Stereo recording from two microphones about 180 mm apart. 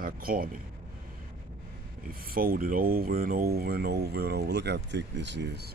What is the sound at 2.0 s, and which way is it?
Speech, 55° right (ahead or behind).